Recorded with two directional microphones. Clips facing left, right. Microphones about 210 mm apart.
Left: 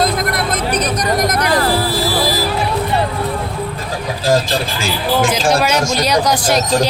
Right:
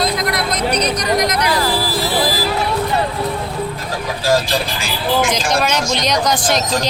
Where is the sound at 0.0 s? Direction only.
50° left (ahead or behind).